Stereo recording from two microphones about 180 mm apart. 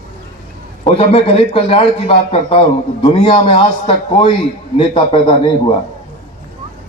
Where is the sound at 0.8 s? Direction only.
30° left (ahead or behind).